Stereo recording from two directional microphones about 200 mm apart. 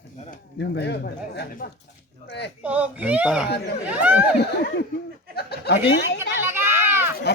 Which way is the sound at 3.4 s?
55° left (ahead or behind).